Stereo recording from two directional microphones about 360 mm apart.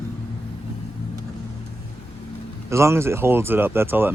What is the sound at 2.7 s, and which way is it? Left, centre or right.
Speech, centre.